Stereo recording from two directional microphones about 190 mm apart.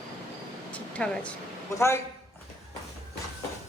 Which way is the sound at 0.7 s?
5° left (ahead or behind).